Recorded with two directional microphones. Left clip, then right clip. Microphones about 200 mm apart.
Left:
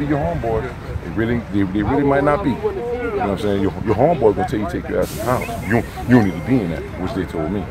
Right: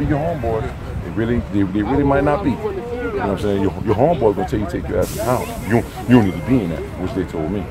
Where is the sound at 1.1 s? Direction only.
15° right (ahead or behind).